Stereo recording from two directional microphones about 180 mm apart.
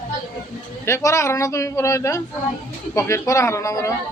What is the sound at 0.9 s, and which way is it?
A man's voice, 15° left (ahead or behind).